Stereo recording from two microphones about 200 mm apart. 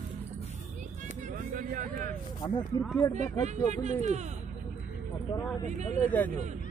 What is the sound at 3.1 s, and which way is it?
Speech, 35° right (ahead or behind).